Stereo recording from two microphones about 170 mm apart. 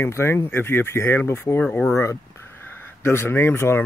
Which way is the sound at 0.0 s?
15° left (ahead or behind).